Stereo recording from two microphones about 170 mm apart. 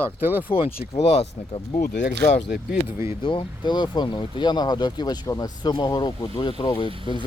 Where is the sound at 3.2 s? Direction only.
30° left (ahead or behind).